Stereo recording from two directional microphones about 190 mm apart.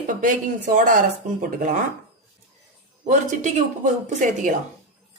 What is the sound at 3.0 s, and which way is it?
Speech, 40° right (ahead or behind).